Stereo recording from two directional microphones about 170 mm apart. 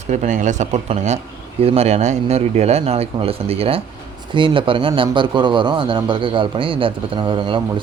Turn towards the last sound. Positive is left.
turn(degrees=-30)  # may be behind; listen again after turning